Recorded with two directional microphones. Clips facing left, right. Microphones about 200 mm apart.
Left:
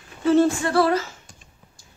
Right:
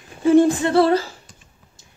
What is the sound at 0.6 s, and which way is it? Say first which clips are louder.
Speech: right 4 dB; 25° right (ahead or behind).